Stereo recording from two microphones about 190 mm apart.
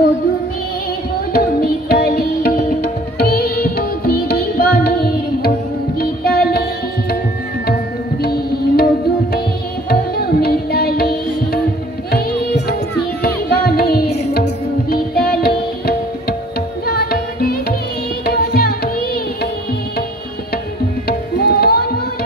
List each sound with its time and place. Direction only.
1.3 s music: 50° left (ahead or behind)
8.2 s music: 55° left (ahead or behind)
9.8 s music: 55° left (ahead or behind)
21.4 s tabla: 55° left (ahead or behind)